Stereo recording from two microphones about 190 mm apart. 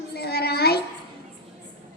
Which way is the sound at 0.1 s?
55° left (ahead or behind).